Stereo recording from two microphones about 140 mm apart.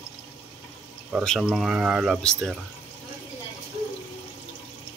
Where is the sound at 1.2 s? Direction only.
Centre (ahead or behind).